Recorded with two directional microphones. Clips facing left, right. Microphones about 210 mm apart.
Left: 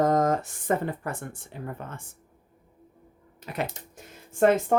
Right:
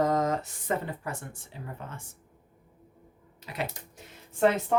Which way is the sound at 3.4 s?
50° left (ahead or behind).